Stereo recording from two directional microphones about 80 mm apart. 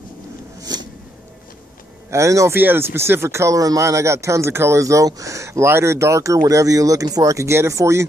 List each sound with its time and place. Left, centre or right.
0.6 s a sound: right
2.0 s speech: right
2.5 s speech: right